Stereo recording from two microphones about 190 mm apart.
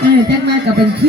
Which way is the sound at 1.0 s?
60° right (ahead or behind).